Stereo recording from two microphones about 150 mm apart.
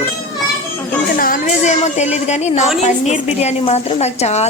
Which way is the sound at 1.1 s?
65° left (ahead or behind).